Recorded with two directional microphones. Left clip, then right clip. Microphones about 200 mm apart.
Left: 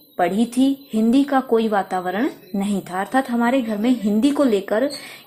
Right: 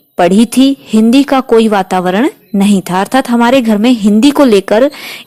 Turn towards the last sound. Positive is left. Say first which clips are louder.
# right 11 dB
turn(degrees=-40)  # may be behind; listen again after turning